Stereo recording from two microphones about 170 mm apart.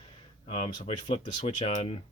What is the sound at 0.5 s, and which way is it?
Speech, 35° left (ahead or behind).